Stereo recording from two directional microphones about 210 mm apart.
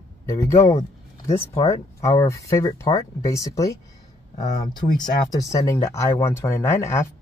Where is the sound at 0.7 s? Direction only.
30° left (ahead or behind).